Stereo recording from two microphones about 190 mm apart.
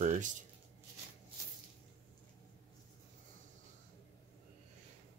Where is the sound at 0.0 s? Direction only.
40° right (ahead or behind).